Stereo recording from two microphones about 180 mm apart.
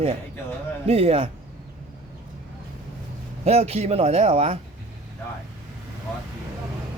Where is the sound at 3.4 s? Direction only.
35° right (ahead or behind).